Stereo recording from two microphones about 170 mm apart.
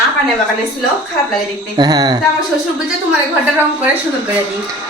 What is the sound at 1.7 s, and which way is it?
Speech, 25° right (ahead or behind).